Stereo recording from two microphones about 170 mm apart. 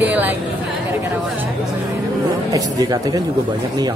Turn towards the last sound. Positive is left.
turn(degrees=-20)  # may be behind; listen again after turning